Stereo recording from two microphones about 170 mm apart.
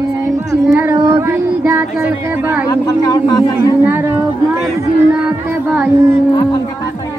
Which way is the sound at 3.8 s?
10° right (ahead or behind).